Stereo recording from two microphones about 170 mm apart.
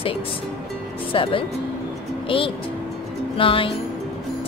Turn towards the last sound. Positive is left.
turn(degrees=30)  # may be behind; listen again after turning